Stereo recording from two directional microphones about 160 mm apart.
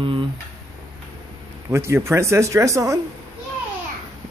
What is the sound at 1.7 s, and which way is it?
Speech, 15° right (ahead or behind).